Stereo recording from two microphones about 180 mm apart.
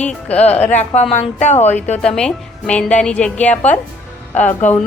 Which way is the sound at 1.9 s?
5° left (ahead or behind).